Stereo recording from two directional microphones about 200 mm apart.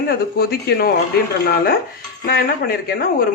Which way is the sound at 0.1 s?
50° left (ahead or behind).